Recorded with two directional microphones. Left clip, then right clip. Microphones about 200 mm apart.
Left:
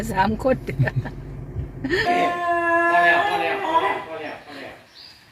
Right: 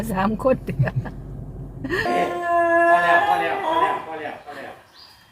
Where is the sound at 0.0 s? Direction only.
5° right (ahead or behind).